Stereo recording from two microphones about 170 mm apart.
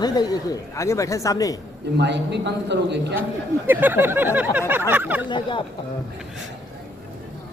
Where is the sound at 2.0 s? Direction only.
90° right.